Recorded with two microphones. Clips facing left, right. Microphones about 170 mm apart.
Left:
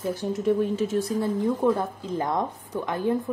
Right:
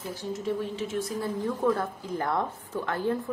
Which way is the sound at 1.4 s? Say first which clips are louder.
Left 2 dB; 20° left (ahead or behind).